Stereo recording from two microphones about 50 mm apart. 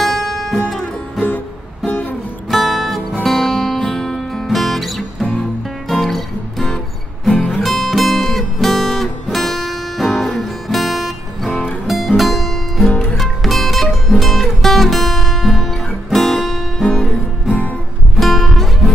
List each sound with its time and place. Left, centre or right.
0.0 s music: centre
1.9 s music: left
2.5 s music: centre
7.3 s music: left
7.6 s music: centre
16.8 s music: left
18.1 s music: centre